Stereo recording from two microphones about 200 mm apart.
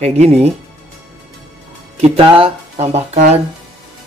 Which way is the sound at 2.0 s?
30° right (ahead or behind).